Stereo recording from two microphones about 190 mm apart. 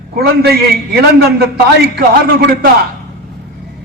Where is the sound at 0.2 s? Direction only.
55° right (ahead or behind).